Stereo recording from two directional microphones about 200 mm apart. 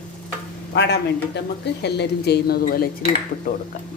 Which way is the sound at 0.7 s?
60° left (ahead or behind).